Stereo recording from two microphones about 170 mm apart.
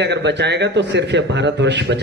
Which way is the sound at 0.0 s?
90° right.